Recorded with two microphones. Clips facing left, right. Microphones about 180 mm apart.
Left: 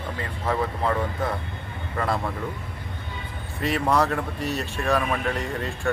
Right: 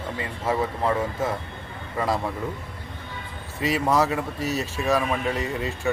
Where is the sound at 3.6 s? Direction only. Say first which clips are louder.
Right 1 dB; 5° right (ahead or behind).